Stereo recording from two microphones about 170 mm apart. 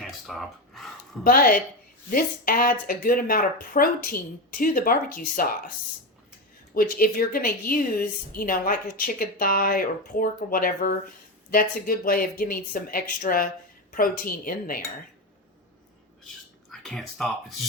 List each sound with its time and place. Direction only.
0.0 s a sound: centre (ahead or behind)
1.2 s a woman's voice: 55° left (ahead or behind)
6.7 s a woman's voice: 60° left (ahead or behind)
16.6 s speech: 5° left (ahead or behind)